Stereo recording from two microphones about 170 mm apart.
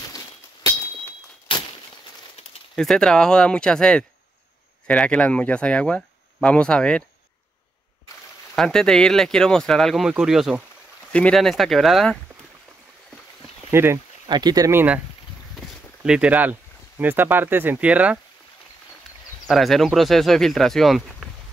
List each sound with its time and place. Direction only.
2.7 s speech: 5° left (ahead or behind)
8.5 s speech: 5° left (ahead or behind)
13.7 s a sound: 15° right (ahead or behind)
14.3 s speech: 25° right (ahead or behind)
16.0 s speech: 5° right (ahead or behind)
19.4 s speech: centre (ahead or behind)